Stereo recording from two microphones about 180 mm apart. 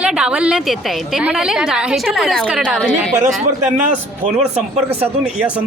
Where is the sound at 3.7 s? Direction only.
40° right (ahead or behind).